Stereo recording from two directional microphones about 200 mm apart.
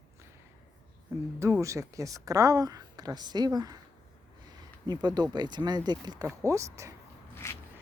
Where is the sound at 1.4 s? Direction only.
15° right (ahead or behind).